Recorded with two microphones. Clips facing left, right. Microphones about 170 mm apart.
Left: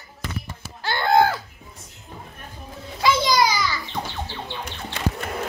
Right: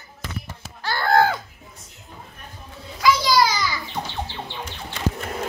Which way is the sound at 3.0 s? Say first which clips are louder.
Right 1 dB; 25° left (ahead or behind).